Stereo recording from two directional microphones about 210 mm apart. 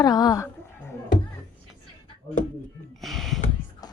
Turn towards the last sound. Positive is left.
turn(degrees=0)  # may be behind; listen again after turning